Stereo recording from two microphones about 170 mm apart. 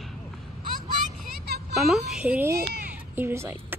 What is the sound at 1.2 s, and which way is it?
Vehicle, 65° right (ahead or behind).